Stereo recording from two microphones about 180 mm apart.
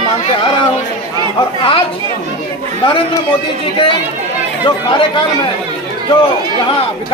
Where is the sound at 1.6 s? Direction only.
30° left (ahead or behind).